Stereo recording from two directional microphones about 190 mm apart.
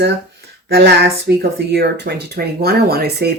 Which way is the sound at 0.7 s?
60° right (ahead or behind).